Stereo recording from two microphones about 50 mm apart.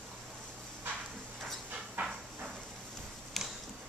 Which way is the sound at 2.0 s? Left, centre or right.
Right.